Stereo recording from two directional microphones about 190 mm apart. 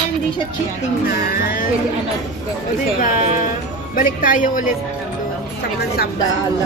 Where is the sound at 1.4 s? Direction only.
50° left (ahead or behind).